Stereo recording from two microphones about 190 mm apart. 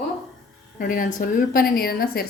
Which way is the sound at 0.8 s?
45° left (ahead or behind).